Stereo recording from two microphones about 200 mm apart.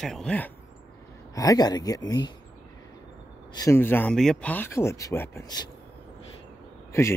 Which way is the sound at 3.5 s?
15° left (ahead or behind).